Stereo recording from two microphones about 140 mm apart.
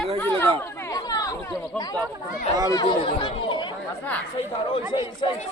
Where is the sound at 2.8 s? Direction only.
35° left (ahead or behind).